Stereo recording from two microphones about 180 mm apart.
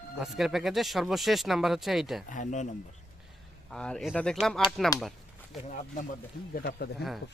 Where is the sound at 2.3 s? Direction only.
45° left (ahead or behind).